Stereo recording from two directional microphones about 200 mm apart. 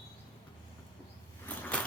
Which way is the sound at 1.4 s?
10° left (ahead or behind).